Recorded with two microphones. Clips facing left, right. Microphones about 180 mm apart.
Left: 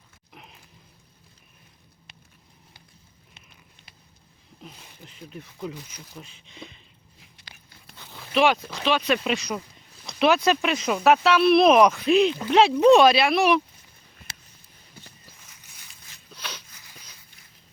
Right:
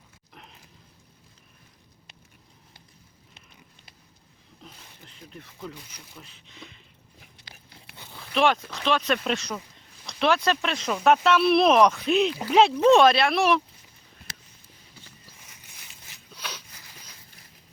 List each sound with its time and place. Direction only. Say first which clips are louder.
4.6 s speech: left 3 dB; 15° left (ahead or behind)
8.1 s speech: left 2 dB; centre (ahead or behind)
16.3 s a sound: even; 10° right (ahead or behind)